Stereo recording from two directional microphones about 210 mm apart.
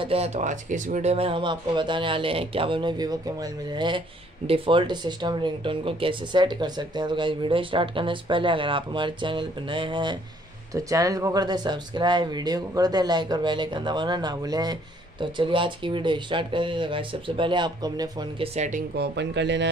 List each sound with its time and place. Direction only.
0.0 s speech: 30° right (ahead or behind)
18.5 s speech: 35° right (ahead or behind)
18.9 s speech: 55° right (ahead or behind)